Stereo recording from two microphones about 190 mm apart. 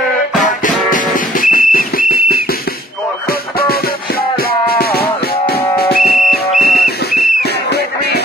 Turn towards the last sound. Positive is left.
turn(degrees=50)  # may be behind; listen again after turning